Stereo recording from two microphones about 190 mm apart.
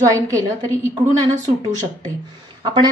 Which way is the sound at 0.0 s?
20° right (ahead or behind).